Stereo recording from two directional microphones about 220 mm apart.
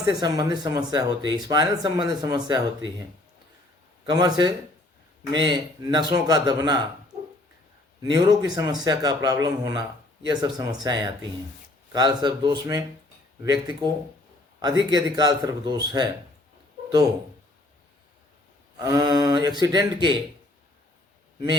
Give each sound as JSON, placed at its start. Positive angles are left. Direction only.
{"t": 0.1, "sound": "speech", "side_deg": -15}
{"t": 4.0, "sound": "a man's voice", "side_deg": -20}
{"t": 8.1, "sound": "a man's voice", "side_deg": -20}
{"t": 18.8, "sound": "a man's voice", "side_deg": -15}